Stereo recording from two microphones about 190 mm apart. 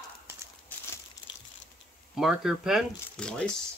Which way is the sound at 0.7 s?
10° left (ahead or behind).